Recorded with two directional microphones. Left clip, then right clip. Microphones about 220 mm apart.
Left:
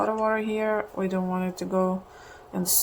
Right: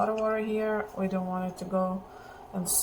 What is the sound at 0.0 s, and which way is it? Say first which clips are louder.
Speech: left 3 dB; 45° left (ahead or behind).